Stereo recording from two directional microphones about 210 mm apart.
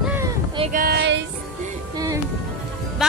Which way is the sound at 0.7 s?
50° right (ahead or behind).